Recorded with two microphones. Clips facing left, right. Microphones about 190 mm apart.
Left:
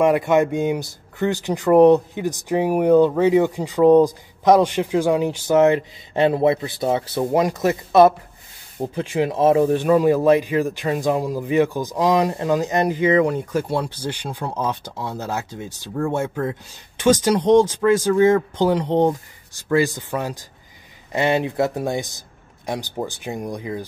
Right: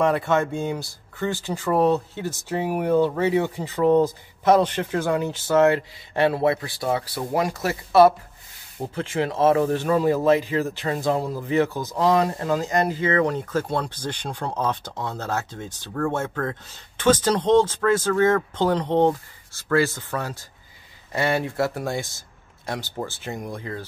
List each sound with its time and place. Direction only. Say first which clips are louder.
0.0 s speech: left 4 dB; 15° left (ahead or behind)